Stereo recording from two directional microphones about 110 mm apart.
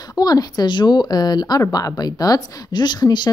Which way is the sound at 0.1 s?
35° left (ahead or behind).